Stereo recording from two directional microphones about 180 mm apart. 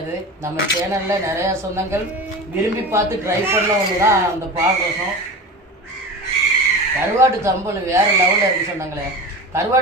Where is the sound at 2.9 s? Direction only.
15° right (ahead or behind).